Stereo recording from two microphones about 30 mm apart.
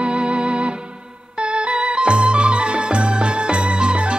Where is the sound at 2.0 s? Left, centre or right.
Right.